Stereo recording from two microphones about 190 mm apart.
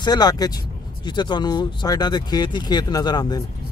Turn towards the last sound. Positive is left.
turn(degrees=20)  # may be behind; listen again after turning